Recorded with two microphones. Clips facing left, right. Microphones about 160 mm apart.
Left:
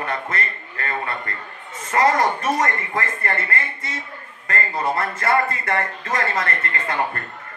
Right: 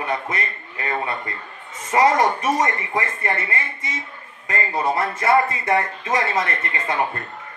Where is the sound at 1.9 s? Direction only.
15° right (ahead or behind).